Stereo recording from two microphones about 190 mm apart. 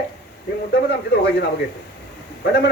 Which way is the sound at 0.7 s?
60° left (ahead or behind).